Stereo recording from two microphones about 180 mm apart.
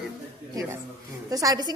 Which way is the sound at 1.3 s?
20° right (ahead or behind).